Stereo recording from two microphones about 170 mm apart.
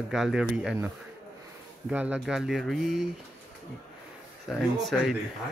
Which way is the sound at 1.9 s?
10° right (ahead or behind).